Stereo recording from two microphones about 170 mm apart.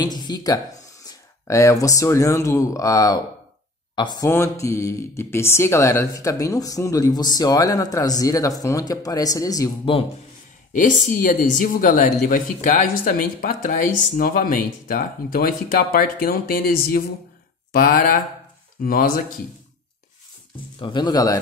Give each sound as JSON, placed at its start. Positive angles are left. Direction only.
{"t": 0.0, "sound": "speech", "side_deg": 25}
{"t": 10.7, "sound": "speech", "side_deg": 50}
{"t": 20.8, "sound": "speech", "side_deg": 25}